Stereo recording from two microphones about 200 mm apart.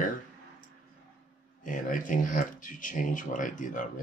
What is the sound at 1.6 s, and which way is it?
Speech, 40° left (ahead or behind).